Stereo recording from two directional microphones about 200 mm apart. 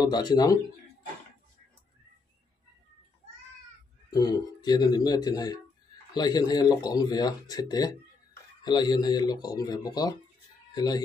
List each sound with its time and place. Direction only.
0.0 s speech: 20° left (ahead or behind)
4.1 s speech: 20° left (ahead or behind)